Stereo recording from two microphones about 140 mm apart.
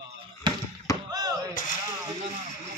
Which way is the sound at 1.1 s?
25° right (ahead or behind).